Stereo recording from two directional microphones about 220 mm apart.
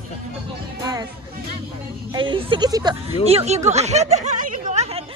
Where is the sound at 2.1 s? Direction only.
20° right (ahead or behind).